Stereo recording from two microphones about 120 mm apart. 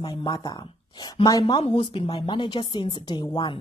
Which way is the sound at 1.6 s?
50° left (ahead or behind).